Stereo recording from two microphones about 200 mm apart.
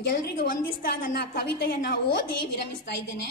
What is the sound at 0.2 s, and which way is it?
A woman's voice, 50° left (ahead or behind).